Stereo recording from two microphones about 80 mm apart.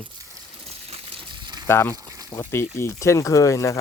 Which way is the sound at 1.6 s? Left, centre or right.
Left.